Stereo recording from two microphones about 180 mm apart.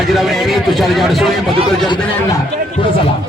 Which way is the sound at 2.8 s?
30° left (ahead or behind).